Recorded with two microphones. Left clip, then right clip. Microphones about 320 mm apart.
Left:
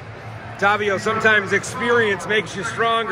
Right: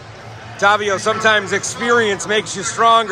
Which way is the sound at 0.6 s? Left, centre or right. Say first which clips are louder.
Right 4 dB; centre.